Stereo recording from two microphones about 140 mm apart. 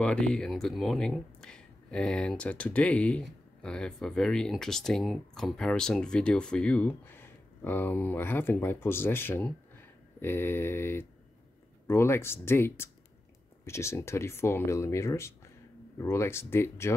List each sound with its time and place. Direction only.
0.0 s speech: 5° left (ahead or behind)